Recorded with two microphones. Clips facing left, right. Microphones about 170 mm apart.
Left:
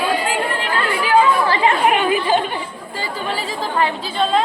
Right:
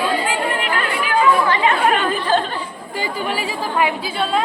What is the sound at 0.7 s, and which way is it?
Chatter, 30° left (ahead or behind).